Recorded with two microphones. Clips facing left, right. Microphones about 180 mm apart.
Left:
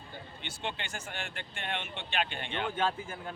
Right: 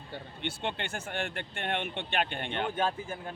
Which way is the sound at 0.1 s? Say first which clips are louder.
Right 8 dB; 55° right (ahead or behind).